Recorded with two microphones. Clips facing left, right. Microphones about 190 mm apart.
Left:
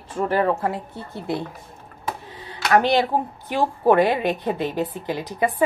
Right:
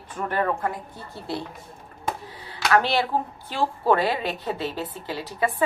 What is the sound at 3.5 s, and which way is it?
A woman's voice, 15° left (ahead or behind).